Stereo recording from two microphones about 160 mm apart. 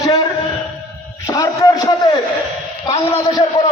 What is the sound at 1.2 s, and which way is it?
Speech, 20° left (ahead or behind).